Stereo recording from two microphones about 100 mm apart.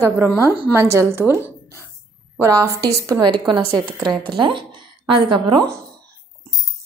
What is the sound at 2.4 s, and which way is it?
Speech, 30° right (ahead or behind).